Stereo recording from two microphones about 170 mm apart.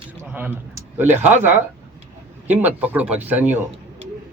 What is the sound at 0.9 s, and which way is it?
Speech, 10° right (ahead or behind).